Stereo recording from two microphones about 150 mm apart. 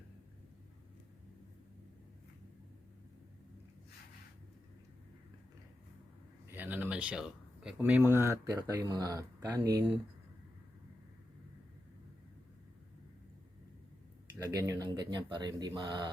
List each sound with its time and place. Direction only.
6.5 s speech: 10° right (ahead or behind)
14.3 s speech: 20° right (ahead or behind)